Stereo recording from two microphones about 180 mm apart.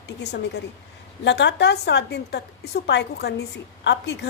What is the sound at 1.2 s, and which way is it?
A woman's voice, 75° left (ahead or behind).